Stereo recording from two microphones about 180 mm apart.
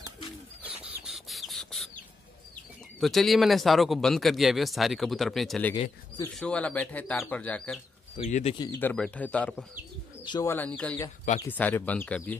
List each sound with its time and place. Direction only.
1.0 s a sound: centre (ahead or behind)
3.0 s speech: centre (ahead or behind)
8.3 s speech: 40° left (ahead or behind)
8.7 s speech: 5° left (ahead or behind)
10.2 s speech: 25° left (ahead or behind)
10.5 s speech: 10° left (ahead or behind)